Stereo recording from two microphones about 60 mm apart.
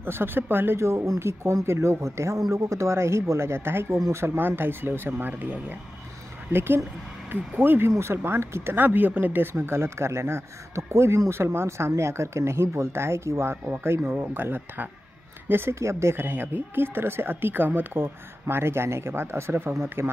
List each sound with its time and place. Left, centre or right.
0.0 s speech: right
0.7 s speech: right
6.5 s speech: right
14.0 s speech: right
15.7 s speech: right